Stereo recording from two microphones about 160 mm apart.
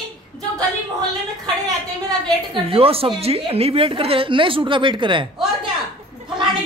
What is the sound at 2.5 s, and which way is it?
A woman's voice, 35° right (ahead or behind).